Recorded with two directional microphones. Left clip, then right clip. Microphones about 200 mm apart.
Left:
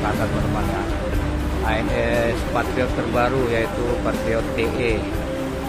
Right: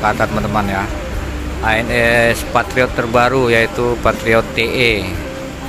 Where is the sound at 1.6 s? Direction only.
25° right (ahead or behind).